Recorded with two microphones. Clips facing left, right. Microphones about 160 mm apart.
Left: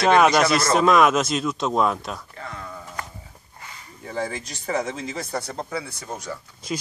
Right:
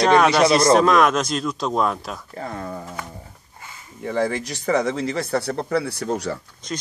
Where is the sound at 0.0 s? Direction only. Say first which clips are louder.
Right 1 dB; 5° left (ahead or behind).